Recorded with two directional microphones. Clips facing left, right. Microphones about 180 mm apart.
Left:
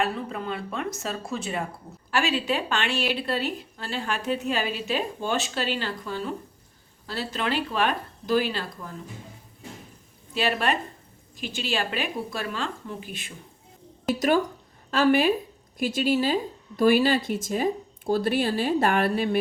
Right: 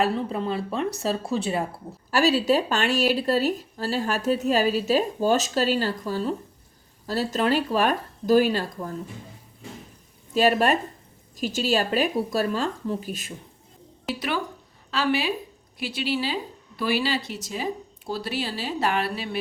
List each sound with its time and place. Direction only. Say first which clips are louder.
0.0 s speech: right 4 dB; 30° right (ahead or behind)
10.3 s speech: right 5 dB; 45° right (ahead or behind)
14.2 s a woman's voice: left 7 dB; 45° left (ahead or behind)